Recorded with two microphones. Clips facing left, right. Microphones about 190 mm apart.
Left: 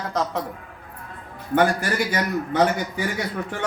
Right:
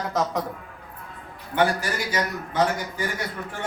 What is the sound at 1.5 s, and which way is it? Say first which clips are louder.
A man's voice: left 3 dB; 55° left (ahead or behind).